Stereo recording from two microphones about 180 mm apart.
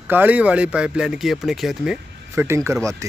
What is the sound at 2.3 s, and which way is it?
Speech, 15° right (ahead or behind).